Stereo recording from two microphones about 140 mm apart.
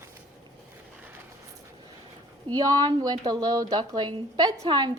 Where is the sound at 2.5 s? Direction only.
25° right (ahead or behind).